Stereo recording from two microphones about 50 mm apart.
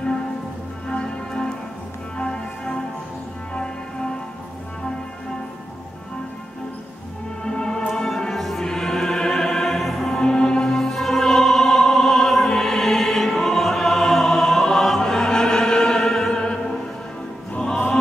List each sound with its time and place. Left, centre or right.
0.8 s music: centre
7.4 s music: centre